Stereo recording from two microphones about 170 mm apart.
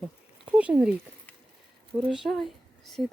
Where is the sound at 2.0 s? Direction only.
Centre (ahead or behind).